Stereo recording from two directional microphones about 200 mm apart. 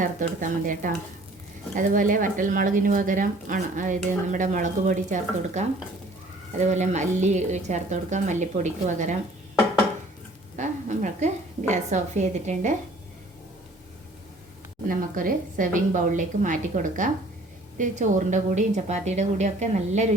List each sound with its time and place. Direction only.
0.0 s speech: 40° right (ahead or behind)
10.6 s speech: 40° right (ahead or behind)
14.8 s speech: 45° right (ahead or behind)